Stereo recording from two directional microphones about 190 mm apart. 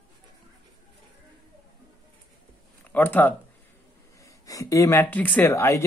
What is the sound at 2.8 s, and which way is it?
Speech, 10° left (ahead or behind).